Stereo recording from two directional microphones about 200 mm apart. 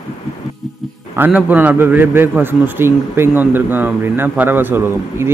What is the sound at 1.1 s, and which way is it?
A man's voice, 10° right (ahead or behind).